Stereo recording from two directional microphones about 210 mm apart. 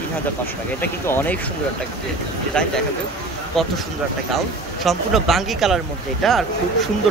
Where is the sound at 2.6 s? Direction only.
5° left (ahead or behind).